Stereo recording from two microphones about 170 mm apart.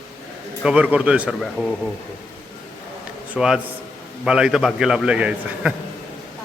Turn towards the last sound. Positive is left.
turn(degrees=-5)  # may be behind; listen again after turning